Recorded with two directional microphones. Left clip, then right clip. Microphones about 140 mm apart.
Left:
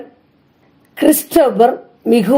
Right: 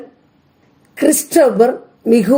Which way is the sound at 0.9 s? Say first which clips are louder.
Left 1 dB; 20° left (ahead or behind).